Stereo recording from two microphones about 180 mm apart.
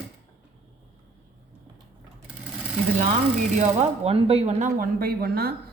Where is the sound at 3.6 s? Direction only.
35° right (ahead or behind).